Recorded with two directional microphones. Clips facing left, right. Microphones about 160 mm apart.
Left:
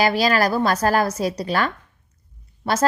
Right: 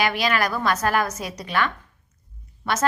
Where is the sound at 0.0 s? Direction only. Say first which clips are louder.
Left 4 dB; 35° left (ahead or behind).